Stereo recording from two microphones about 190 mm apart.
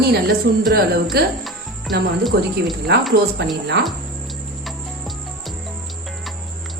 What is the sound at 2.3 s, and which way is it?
Speech, 65° right (ahead or behind).